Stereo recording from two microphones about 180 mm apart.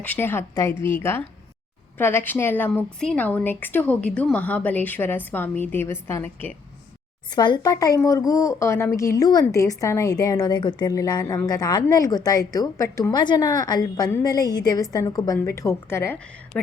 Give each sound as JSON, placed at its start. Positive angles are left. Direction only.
{"t": 0.0, "sound": "a woman's voice", "side_deg": 10}
{"t": 7.3, "sound": "a woman's voice", "side_deg": 25}